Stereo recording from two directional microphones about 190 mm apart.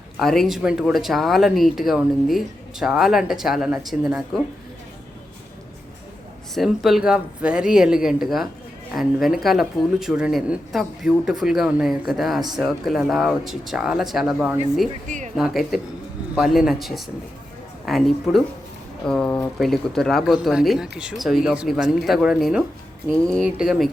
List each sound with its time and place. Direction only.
0.2 s speech: centre (ahead or behind)
6.5 s speech: centre (ahead or behind)
15.0 s speech: 40° right (ahead or behind)
15.4 s speech: centre (ahead or behind)